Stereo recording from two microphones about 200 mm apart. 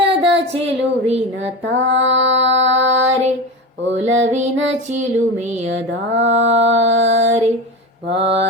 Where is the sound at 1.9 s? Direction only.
65° right (ahead or behind).